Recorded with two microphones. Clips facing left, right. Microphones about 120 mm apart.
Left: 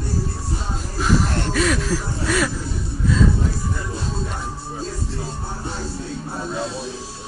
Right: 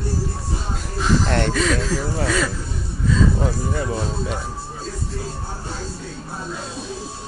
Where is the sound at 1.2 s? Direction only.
80° right.